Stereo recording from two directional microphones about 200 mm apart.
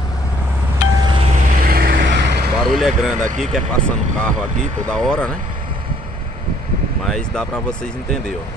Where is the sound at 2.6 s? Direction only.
Centre (ahead or behind).